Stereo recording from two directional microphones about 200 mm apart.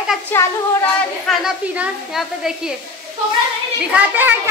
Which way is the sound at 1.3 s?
5° right (ahead or behind).